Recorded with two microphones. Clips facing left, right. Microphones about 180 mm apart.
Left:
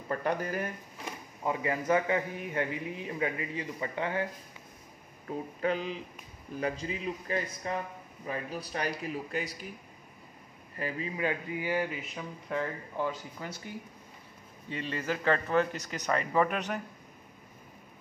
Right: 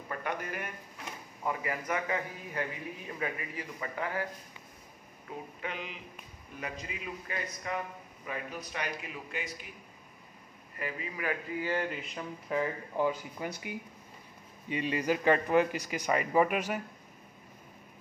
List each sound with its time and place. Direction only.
0.2 s a man's voice: 35° left (ahead or behind)
5.6 s a man's voice: 35° left (ahead or behind)
10.8 s speech: 30° left (ahead or behind); by 12.6 s centre (ahead or behind)
12.9 s speech: 15° right (ahead or behind)